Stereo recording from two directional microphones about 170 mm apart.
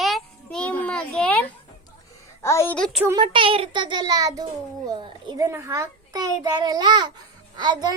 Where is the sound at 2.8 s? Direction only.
5° left (ahead or behind).